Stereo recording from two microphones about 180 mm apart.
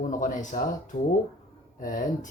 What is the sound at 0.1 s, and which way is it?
Speech, 45° left (ahead or behind).